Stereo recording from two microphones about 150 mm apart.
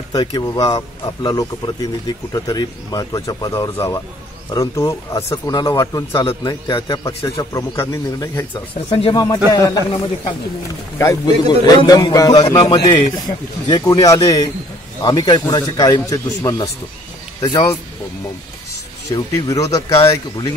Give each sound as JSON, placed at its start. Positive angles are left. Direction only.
{"t": 0.1, "sound": "speech", "side_deg": 30}
{"t": 19.0, "sound": "speech", "side_deg": 25}